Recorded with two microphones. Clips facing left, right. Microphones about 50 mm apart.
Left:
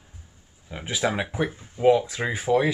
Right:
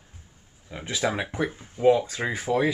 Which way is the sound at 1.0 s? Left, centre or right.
Centre.